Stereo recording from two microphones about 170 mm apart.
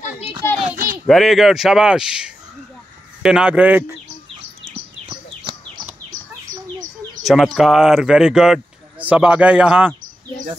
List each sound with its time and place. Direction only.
0.6 s children playing: 50° right (ahead or behind)
1.0 s speech: centre (ahead or behind)
7.2 s speech: centre (ahead or behind)